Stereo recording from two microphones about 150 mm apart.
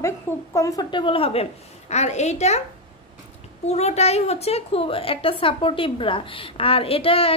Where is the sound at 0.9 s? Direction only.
35° left (ahead or behind).